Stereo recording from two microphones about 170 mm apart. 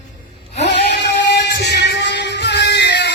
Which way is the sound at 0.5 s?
85° left.